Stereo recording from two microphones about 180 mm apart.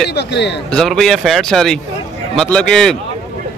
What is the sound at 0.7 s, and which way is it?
Speech, centre (ahead or behind).